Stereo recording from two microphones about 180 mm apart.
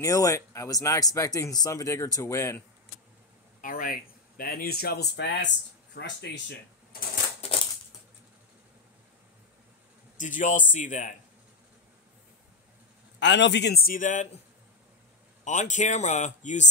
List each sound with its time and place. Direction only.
0.0 s speech: 15° left (ahead or behind)
3.6 s speech: 50° left (ahead or behind); by 6.4 s 75° left (ahead or behind)
10.1 s a man's voice: 45° left (ahead or behind)
13.2 s a man's voice: 80° left; by 14.3 s 45° left (ahead or behind)
15.4 s speech: 40° left (ahead or behind)